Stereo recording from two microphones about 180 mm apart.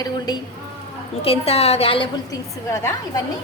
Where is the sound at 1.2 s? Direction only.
35° left (ahead or behind).